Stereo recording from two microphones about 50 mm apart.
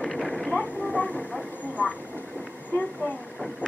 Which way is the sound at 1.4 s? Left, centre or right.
Left.